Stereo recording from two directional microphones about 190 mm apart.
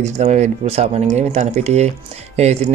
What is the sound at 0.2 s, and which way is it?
Speech, 35° right (ahead or behind).